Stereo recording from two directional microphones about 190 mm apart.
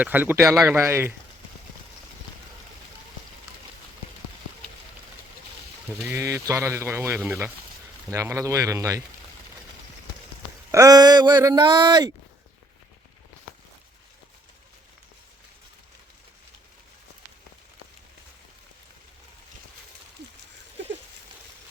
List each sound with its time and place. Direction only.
0.0 s speech: 10° right (ahead or behind)
6.1 s speech: 15° right (ahead or behind)
10.7 s speech: 15° right (ahead or behind)